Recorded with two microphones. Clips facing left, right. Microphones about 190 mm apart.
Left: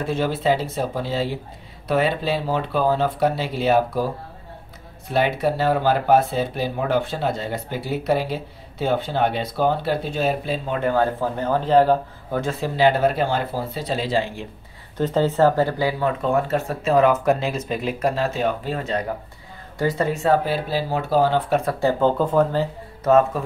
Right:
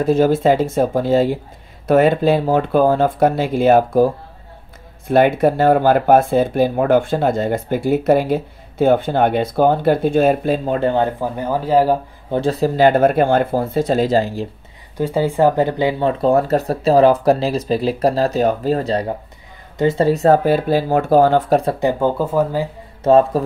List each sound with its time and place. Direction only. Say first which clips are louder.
0.0 s speech: right 8 dB; 40° right (ahead or behind)
10.8 s speech: even; 25° right (ahead or behind)
11.1 s speech: right 1 dB; 10° right (ahead or behind)
12.3 s speech: right 7 dB; 35° right (ahead or behind)
15.0 s speech: right 2 dB; 10° right (ahead or behind); by 21.7 s 35° right (ahead or behind)
21.7 s speech: right 2 dB; 15° right (ahead or behind)
23.0 s speech: right 4 dB; 30° right (ahead or behind)